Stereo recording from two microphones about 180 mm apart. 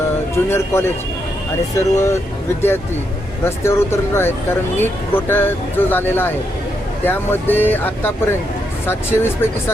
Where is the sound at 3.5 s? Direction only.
15° left (ahead or behind).